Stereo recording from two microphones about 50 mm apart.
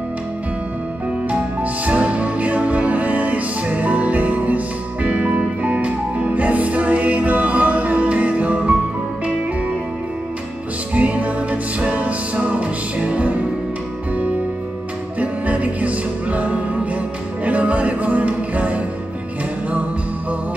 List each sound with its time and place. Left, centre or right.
1.3 s music: right
11.0 s music: right
15.1 s music: right